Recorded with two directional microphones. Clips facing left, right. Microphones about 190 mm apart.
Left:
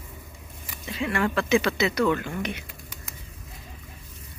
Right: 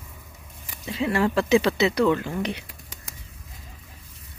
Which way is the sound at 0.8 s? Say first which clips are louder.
Right 3 dB; 30° right (ahead or behind).